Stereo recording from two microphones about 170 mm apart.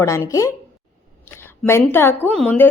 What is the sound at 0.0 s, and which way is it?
Speech, 15° left (ahead or behind).